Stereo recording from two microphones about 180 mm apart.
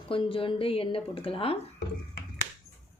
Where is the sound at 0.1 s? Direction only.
30° left (ahead or behind).